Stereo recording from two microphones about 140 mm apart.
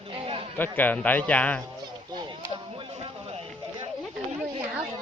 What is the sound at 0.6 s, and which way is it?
A man's voice, 15° left (ahead or behind).